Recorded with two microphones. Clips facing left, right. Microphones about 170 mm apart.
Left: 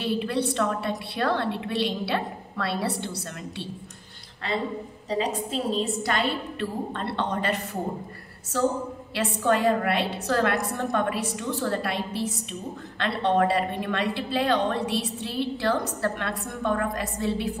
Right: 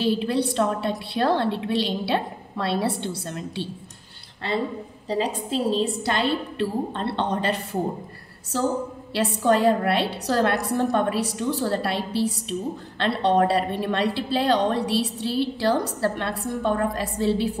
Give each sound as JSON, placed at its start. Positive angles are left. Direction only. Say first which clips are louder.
{"t": 0.0, "sound": "a woman's voice", "louder": "right 4 dB", "side_deg": -30}
{"t": 5.1, "sound": "a woman's voice", "louder": "right 2 dB", "side_deg": -30}
{"t": 9.1, "sound": "a woman's voice", "louder": "right 3 dB", "side_deg": -35}